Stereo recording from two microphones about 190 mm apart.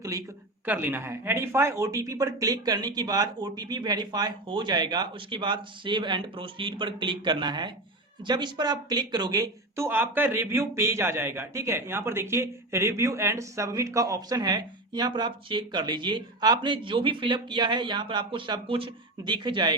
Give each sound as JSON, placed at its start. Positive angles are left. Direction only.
{"t": 0.6, "sound": "speech", "side_deg": -10}